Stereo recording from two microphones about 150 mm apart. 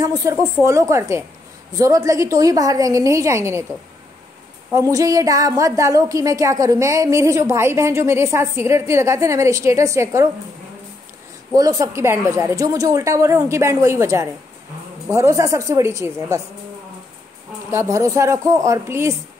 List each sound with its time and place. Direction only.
0.0 s a woman's voice: 25° right (ahead or behind)
4.7 s a woman's voice: 20° right (ahead or behind)
11.5 s a woman's voice: 25° right (ahead or behind)
17.6 s a woman's voice: 20° right (ahead or behind)